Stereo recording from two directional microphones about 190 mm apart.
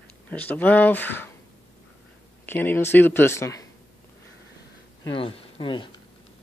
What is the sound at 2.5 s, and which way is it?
Speech, 10° left (ahead or behind).